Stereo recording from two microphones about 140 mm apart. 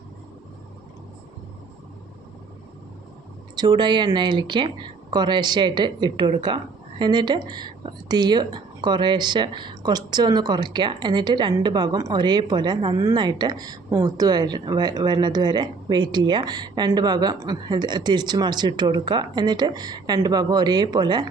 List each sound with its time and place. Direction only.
3.5 s speech: 30° right (ahead or behind)